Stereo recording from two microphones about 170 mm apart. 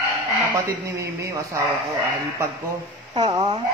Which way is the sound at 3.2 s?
25° right (ahead or behind).